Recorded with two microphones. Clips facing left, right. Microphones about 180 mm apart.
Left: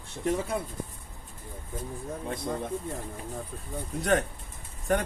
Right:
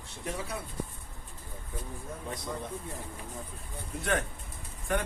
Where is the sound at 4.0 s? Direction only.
40° left (ahead or behind).